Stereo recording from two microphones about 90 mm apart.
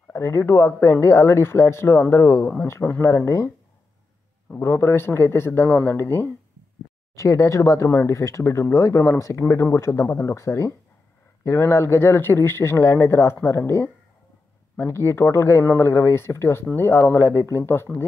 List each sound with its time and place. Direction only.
0.1 s speech: 30° left (ahead or behind)
4.6 s speech: 30° left (ahead or behind)
7.2 s speech: 35° left (ahead or behind)